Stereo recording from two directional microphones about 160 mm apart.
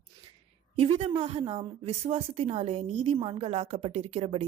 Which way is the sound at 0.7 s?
35° right (ahead or behind).